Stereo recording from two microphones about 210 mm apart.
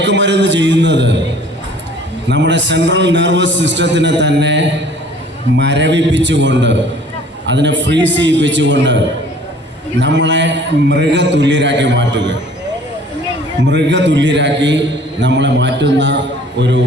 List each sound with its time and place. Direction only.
0.0 s a man's voice: 55° right (ahead or behind)
2.2 s a man's voice: 55° right (ahead or behind)
10.0 s a man's voice: 60° right (ahead or behind)
13.6 s a man's voice: 55° right (ahead or behind)